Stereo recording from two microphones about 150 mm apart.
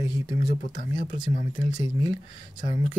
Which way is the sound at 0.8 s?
55° left (ahead or behind).